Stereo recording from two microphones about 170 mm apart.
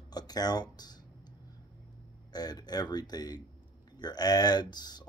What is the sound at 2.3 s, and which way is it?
Speech, 25° left (ahead or behind).